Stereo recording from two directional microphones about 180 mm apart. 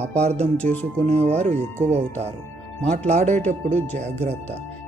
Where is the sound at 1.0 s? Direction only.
35° right (ahead or behind).